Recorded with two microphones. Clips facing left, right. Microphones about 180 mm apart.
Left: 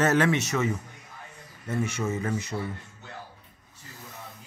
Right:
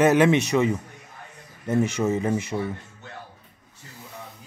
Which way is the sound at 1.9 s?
15° right (ahead or behind).